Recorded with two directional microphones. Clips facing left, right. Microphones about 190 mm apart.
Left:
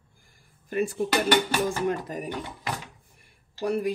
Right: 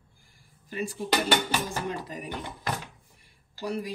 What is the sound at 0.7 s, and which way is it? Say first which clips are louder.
Speech: left 4 dB; 55° left (ahead or behind).